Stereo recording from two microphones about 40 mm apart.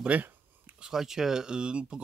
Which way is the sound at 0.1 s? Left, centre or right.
Right.